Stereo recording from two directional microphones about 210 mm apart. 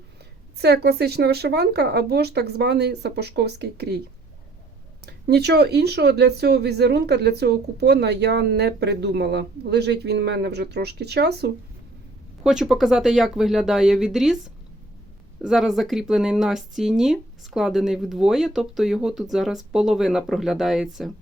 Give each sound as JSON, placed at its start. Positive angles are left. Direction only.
{"t": 0.6, "sound": "speech", "side_deg": -50}
{"t": 5.0, "sound": "speech", "side_deg": -50}
{"t": 12.4, "sound": "speech", "side_deg": -5}
{"t": 15.4, "sound": "speech", "side_deg": 0}